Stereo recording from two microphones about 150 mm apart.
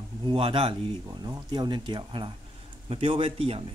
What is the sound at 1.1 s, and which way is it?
Speech, 25° right (ahead or behind).